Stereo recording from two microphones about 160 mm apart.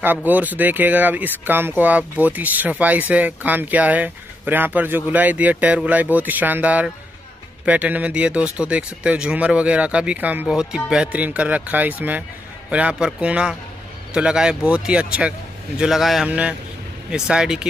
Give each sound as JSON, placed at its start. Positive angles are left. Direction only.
{"t": 0.0, "sound": "speech", "side_deg": -10}